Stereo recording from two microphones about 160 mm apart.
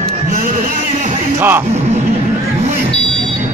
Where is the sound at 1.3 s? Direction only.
10° right (ahead or behind).